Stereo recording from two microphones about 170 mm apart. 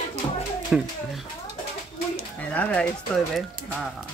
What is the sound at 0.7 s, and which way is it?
Speech, 5° right (ahead or behind).